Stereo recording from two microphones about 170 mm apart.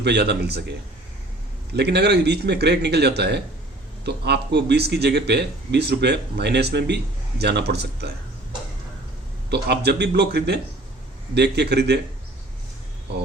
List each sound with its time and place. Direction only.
0.0 s speech: 80° right
1.7 s a man's voice: 75° right (ahead or behind)
9.5 s speech: 80° right
13.1 s speech: 75° right (ahead or behind)